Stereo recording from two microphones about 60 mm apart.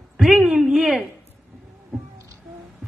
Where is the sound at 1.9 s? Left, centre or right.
Centre.